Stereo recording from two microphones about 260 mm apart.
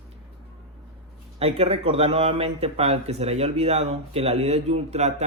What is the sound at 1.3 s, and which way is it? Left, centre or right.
A man's voice, right.